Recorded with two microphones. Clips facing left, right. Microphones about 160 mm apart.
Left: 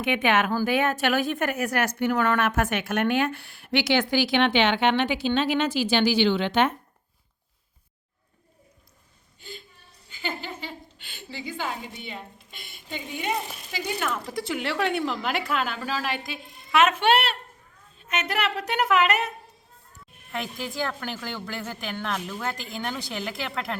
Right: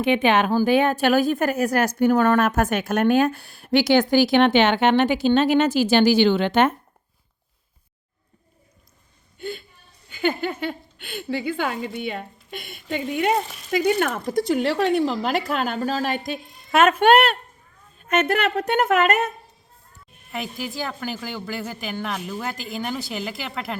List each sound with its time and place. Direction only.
0.0 s speech: 30° right (ahead or behind); by 6.7 s 45° right (ahead or behind)
9.4 s a woman's voice: 60° right (ahead or behind)
20.3 s a woman's voice: 5° right (ahead or behind)